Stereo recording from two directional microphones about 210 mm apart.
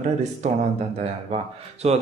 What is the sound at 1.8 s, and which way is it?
Speech, 30° right (ahead or behind).